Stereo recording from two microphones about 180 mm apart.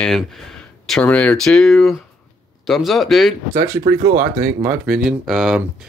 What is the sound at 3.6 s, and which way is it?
Speech, 20° right (ahead or behind).